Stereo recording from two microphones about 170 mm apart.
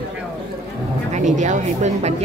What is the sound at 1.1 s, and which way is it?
Speech, 45° right (ahead or behind).